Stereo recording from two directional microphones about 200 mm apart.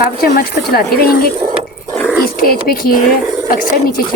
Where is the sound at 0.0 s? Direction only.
50° left (ahead or behind).